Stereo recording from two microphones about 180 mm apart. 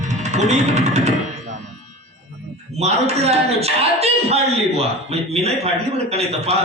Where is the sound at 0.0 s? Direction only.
40° right (ahead or behind).